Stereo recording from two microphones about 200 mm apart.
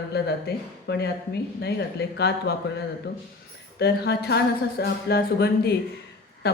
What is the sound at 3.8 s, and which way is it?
A woman's voice, 55° left (ahead or behind).